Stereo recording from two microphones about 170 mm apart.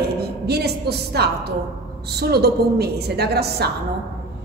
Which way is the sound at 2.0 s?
70° right (ahead or behind).